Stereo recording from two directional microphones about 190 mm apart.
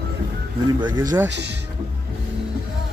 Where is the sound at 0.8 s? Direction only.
20° right (ahead or behind).